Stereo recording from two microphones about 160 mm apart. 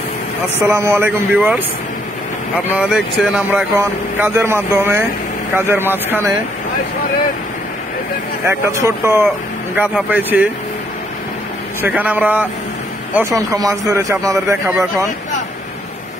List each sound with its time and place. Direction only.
0.6 s speech: 15° right (ahead or behind)
2.7 s speech: 5° right (ahead or behind)
8.5 s speech: 15° right (ahead or behind)
11.8 s a man's voice: 10° right (ahead or behind)